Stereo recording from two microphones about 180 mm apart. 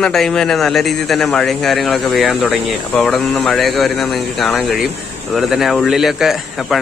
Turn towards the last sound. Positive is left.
turn(degrees=0)  # may be behind; listen again after turning